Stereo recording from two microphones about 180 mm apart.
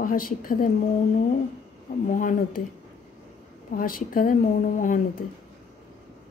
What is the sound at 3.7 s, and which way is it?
A woman's voice, 50° left (ahead or behind).